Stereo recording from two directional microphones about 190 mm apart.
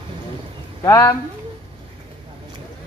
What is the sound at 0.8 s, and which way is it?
Speech, 20° left (ahead or behind).